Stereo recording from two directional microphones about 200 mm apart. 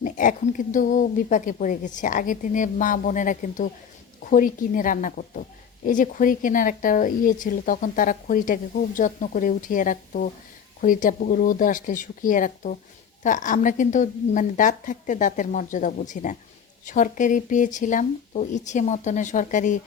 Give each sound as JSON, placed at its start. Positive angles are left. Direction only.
{"t": 0.0, "sound": "speech", "side_deg": 40}